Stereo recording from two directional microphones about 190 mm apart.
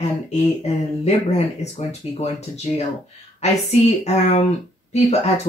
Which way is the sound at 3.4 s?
35° left (ahead or behind).